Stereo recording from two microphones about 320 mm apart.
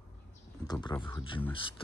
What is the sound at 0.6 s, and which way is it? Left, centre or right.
Speech, centre.